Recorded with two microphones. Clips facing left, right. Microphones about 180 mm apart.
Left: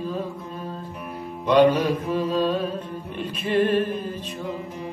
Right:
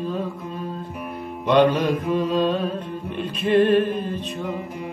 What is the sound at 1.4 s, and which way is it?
Music, 10° left (ahead or behind).